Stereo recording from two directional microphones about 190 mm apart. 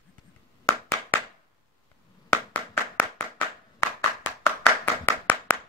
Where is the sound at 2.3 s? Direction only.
10° left (ahead or behind).